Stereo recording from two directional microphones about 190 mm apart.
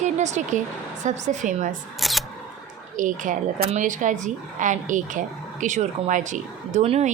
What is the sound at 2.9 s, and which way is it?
A woman's voice, 45° right (ahead or behind).